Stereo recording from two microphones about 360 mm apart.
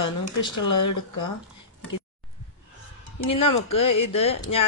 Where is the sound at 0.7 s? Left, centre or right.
Left.